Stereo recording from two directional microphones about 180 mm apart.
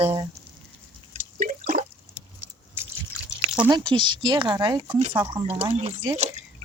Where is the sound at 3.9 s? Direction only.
25° right (ahead or behind).